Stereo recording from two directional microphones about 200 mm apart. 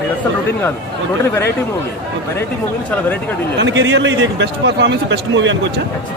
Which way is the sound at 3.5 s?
65° right (ahead or behind).